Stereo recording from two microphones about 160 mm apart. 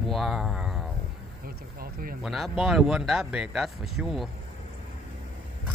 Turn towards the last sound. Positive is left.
turn(degrees=0)  # may be behind; listen again after turning